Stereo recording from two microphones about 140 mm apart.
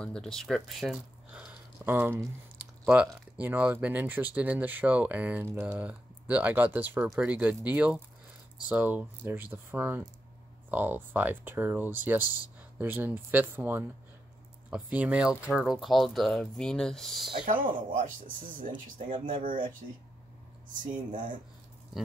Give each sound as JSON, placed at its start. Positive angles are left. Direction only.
{"t": 0.0, "sound": "speech", "side_deg": 5}
{"t": 17.5, "sound": "speech", "side_deg": -70}